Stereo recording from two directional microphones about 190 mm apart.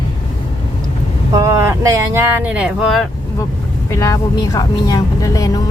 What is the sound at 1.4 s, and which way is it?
Speech, 15° right (ahead or behind).